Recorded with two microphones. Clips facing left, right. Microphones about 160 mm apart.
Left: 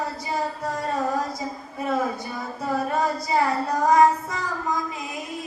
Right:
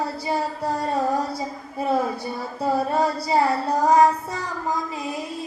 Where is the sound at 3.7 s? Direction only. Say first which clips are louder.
Even; 35° right (ahead or behind).